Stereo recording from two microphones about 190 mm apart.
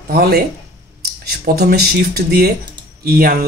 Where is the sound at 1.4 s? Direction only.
55° right (ahead or behind).